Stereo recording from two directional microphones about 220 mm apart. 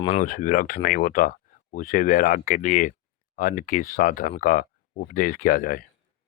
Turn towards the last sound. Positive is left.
turn(degrees=40)  # may be behind; listen again after turning